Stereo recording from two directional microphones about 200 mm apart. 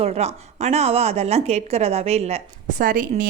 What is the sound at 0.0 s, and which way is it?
A woman's voice, 35° right (ahead or behind).